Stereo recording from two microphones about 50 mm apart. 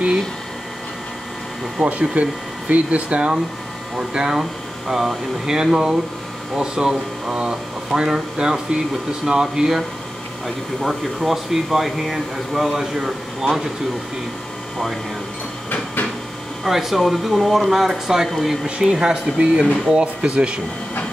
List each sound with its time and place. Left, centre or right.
1.9 s speech: right; by 9.8 s centre
10.4 s speech: centre
16.6 s speech: centre
18.9 s speech: centre